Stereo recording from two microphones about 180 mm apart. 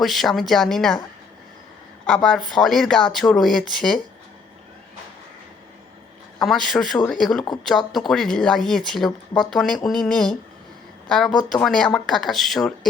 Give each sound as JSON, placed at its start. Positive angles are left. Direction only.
{"t": 0.0, "sound": "speech", "side_deg": 0}
{"t": 2.0, "sound": "speech", "side_deg": 5}
{"t": 6.4, "sound": "speech", "side_deg": 0}
{"t": 11.6, "sound": "speech", "side_deg": 5}